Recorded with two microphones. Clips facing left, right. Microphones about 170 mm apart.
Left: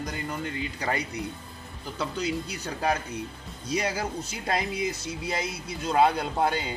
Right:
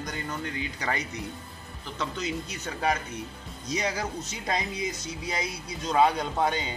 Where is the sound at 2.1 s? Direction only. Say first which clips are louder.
Left 3 dB; 35° left (ahead or behind).